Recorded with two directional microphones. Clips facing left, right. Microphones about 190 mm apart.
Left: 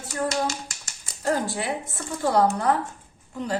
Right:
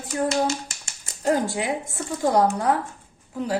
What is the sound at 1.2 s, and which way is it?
A woman's voice, 15° right (ahead or behind).